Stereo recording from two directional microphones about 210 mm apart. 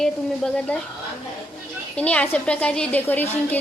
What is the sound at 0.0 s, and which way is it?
Speech, 5° left (ahead or behind).